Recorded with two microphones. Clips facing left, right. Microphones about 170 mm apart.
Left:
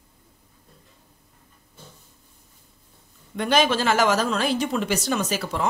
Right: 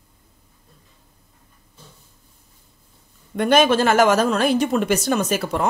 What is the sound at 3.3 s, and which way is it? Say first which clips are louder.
Speech: right 5 dB; 55° right (ahead or behind).